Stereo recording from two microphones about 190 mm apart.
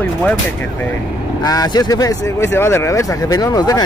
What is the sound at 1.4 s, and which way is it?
Speech, 20° left (ahead or behind).